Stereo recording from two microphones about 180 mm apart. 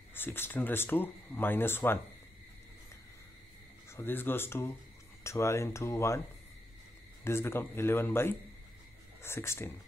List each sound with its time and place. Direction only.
0.1 s speech: 10° left (ahead or behind)
3.9 s speech: 10° left (ahead or behind)
7.2 s speech: 15° left (ahead or behind)